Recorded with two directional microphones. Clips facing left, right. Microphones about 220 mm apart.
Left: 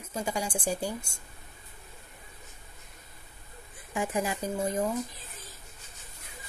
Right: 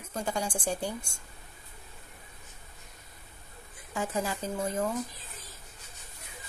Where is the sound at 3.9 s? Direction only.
15° left (ahead or behind).